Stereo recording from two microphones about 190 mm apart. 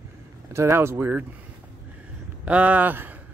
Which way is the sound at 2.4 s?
5° right (ahead or behind).